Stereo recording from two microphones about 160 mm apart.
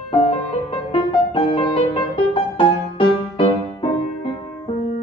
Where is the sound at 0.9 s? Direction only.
35° left (ahead or behind).